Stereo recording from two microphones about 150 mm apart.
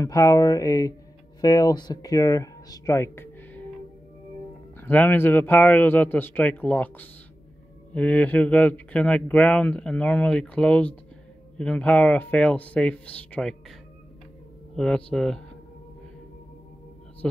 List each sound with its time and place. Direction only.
0.0 s speech: 20° left (ahead or behind)
4.7 s speech: 10° left (ahead or behind)
14.8 s speech: 5° left (ahead or behind)
17.2 s speech: 5° left (ahead or behind)